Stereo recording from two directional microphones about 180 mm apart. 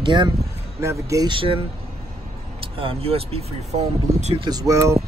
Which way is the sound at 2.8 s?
30° right (ahead or behind).